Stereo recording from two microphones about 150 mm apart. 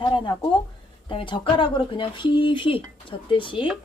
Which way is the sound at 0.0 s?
35° left (ahead or behind).